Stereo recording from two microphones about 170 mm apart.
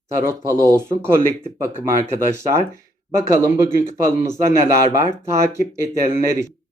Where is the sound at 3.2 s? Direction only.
15° right (ahead or behind).